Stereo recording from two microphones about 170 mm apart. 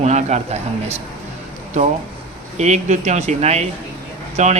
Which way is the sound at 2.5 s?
40° right (ahead or behind).